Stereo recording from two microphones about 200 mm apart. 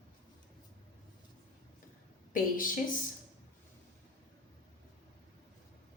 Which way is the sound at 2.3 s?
45° left (ahead or behind).